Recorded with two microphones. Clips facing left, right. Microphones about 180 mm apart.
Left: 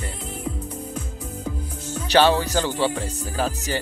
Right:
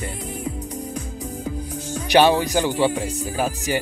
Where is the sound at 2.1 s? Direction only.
15° right (ahead or behind).